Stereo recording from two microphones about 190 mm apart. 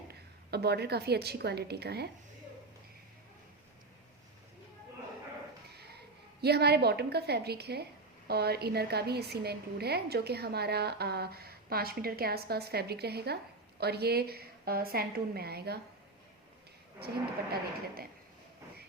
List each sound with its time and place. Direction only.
0.1 s a woman's voice: 60° right (ahead or behind)
5.7 s a sound: 55° right (ahead or behind)
6.4 s a woman's voice: 60° right (ahead or behind)
17.5 s speech: 50° right (ahead or behind)